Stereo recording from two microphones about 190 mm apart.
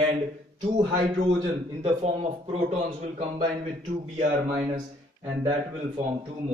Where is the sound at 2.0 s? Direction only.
35° right (ahead or behind).